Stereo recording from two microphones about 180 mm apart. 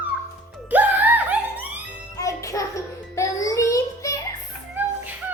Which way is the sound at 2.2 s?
15° left (ahead or behind).